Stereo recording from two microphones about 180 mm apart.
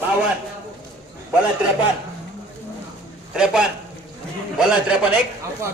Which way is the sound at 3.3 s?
5° right (ahead or behind).